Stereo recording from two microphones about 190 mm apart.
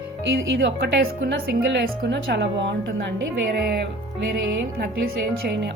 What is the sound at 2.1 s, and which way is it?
Speech, 75° right (ahead or behind).